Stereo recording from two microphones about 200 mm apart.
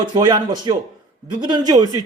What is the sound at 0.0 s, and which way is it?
Speech, 20° right (ahead or behind).